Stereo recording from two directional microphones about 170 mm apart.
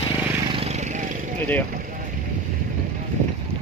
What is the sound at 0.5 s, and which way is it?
Vehicle, 35° right (ahead or behind).